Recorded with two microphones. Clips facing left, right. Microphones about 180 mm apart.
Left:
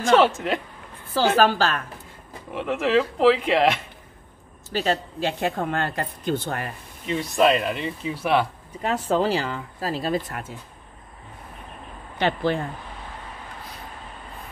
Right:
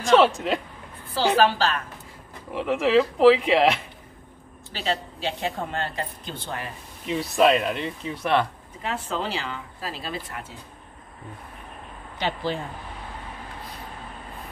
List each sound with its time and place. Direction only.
0.1 s speech: centre (ahead or behind)
1.1 s speech: 45° left (ahead or behind)
2.5 s speech: centre (ahead or behind)
4.7 s speech: 50° left (ahead or behind)
7.1 s speech: centre (ahead or behind)
9.1 s speech: 40° left (ahead or behind)
12.2 s speech: 60° left (ahead or behind)